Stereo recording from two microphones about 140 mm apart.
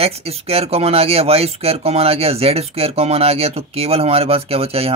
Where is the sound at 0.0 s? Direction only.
45° right (ahead or behind).